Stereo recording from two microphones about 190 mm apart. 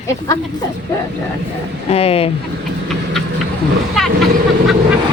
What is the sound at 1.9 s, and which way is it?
Speech, 30° left (ahead or behind).